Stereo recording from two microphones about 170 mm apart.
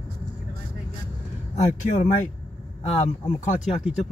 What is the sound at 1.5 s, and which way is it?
Speech, 40° left (ahead or behind).